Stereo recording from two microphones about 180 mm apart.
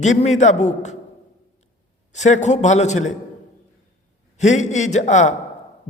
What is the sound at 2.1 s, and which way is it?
A man's voice, 40° left (ahead or behind).